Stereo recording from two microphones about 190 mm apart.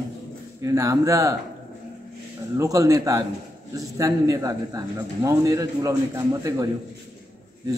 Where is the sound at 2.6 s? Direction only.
15° right (ahead or behind).